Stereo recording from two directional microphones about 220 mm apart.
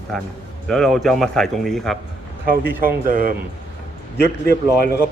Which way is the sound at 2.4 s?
40° right (ahead or behind).